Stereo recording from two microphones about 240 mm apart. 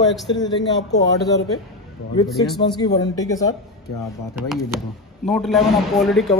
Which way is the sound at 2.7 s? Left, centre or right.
Centre.